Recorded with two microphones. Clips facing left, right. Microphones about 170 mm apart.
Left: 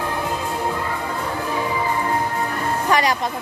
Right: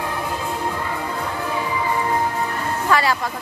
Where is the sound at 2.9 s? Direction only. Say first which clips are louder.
Even; 20° left (ahead or behind).